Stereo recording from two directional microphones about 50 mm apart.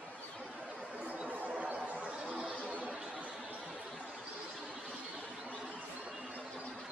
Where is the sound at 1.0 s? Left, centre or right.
Right.